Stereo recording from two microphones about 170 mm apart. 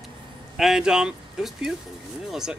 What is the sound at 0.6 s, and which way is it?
Speech, 5° right (ahead or behind).